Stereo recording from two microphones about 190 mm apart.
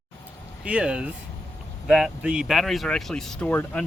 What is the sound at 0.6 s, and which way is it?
Speech, 5° right (ahead or behind).